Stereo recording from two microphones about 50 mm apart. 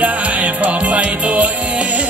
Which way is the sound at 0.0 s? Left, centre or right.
Right.